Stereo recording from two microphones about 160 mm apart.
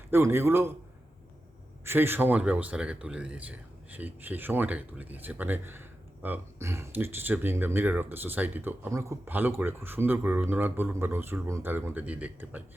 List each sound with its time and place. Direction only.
0.1 s speech: 15° right (ahead or behind)
1.8 s speech: 15° right (ahead or behind)